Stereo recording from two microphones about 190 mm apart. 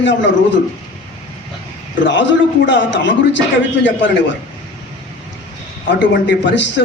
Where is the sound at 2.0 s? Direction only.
75° left (ahead or behind).